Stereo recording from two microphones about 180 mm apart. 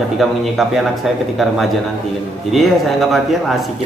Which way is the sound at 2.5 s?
Centre (ahead or behind).